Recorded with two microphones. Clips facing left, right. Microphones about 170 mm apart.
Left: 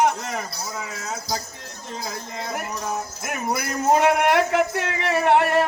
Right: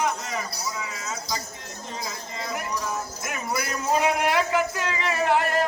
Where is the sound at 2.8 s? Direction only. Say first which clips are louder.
Left 2 dB; 55° left (ahead or behind).